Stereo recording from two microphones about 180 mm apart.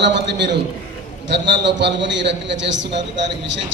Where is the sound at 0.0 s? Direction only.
75° right (ahead or behind).